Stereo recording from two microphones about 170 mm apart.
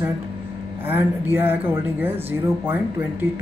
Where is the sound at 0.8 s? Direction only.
10° right (ahead or behind).